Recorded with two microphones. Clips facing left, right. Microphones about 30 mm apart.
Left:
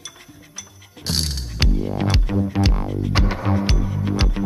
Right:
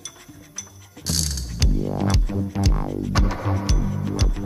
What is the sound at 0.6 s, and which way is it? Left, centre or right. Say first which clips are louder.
Music: left 2 dB; left.